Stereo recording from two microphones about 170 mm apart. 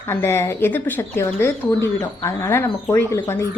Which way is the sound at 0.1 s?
15° left (ahead or behind).